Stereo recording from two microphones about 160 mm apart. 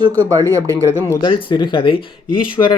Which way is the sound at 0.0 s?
25° right (ahead or behind).